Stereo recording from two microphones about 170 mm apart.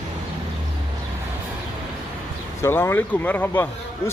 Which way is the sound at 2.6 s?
15° left (ahead or behind).